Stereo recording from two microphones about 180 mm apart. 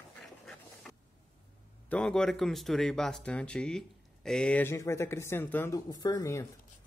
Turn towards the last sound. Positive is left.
turn(degrees=15)  # may be behind; listen again after turning